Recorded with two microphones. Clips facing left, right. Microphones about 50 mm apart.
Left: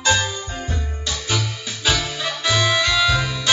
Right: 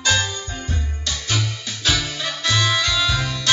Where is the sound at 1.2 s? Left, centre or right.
Centre.